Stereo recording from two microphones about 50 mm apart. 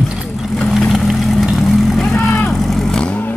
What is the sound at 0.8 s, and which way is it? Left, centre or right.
Vehicle, centre.